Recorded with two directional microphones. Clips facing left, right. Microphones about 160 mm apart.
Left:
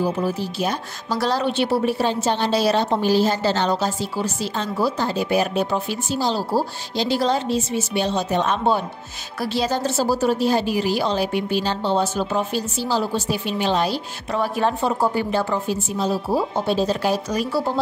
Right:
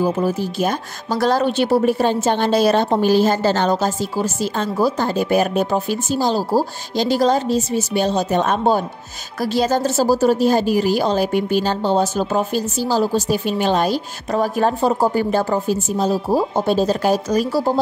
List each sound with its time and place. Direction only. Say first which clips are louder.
0.0 s speech: right 4 dB; 50° right (ahead or behind)